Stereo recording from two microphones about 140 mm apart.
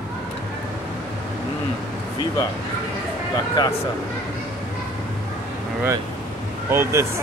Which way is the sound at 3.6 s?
30° left (ahead or behind).